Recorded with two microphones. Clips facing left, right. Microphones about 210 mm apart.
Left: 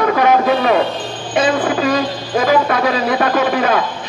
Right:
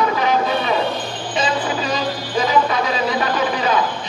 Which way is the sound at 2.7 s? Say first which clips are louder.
Left 4 dB; 55° left (ahead or behind).